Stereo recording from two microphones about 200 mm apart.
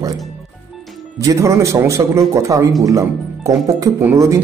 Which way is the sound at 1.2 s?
15° right (ahead or behind).